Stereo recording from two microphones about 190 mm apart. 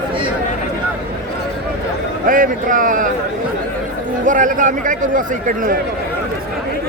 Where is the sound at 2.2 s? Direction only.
45° right (ahead or behind).